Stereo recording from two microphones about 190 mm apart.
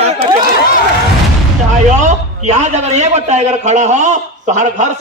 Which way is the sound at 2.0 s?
40° right (ahead or behind).